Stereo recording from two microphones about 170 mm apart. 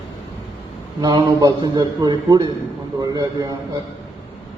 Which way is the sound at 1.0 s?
25° right (ahead or behind).